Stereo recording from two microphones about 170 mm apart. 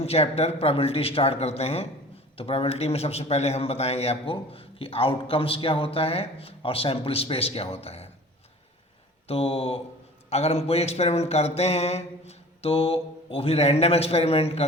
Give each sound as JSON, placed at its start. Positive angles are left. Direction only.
{"t": 0.0, "sound": "a man's voice", "side_deg": 35}
{"t": 9.2, "sound": "a man's voice", "side_deg": 35}